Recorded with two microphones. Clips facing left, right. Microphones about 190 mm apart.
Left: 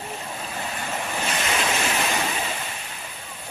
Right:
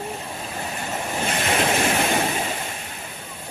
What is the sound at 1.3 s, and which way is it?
Waves, 55° right (ahead or behind).